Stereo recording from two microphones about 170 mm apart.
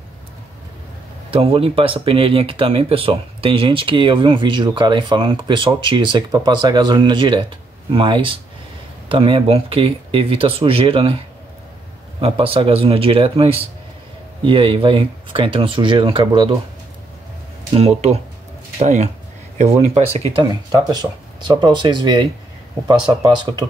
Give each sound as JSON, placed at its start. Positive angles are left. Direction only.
{"t": 1.3, "sound": "speech", "side_deg": -35}
{"t": 12.2, "sound": "speech", "side_deg": -30}
{"t": 17.7, "sound": "speech", "side_deg": -40}
{"t": 21.5, "sound": "speech", "side_deg": -25}